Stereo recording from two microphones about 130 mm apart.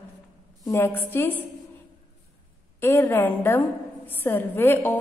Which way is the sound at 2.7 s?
15° left (ahead or behind).